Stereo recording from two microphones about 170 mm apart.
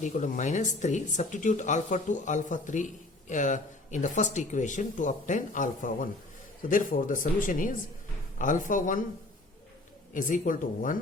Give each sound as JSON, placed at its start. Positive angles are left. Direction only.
{"t": 0.0, "sound": "speech", "side_deg": 45}
{"t": 10.2, "sound": "speech", "side_deg": 50}